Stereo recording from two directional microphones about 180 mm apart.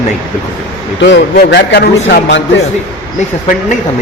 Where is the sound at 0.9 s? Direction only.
70° left (ahead or behind).